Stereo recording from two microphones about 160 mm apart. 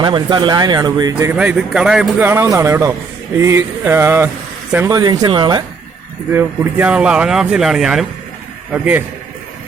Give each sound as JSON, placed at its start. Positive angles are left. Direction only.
{"t": 0.0, "sound": "speech", "side_deg": -30}
{"t": 1.3, "sound": "speech", "side_deg": -5}
{"t": 6.3, "sound": "a man's voice", "side_deg": -10}